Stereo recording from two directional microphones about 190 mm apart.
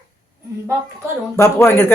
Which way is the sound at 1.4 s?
15° left (ahead or behind).